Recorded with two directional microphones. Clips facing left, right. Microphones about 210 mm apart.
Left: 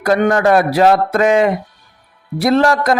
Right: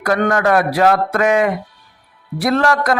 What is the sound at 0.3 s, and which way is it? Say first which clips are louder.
Speech: left 3 dB; 25° left (ahead or behind).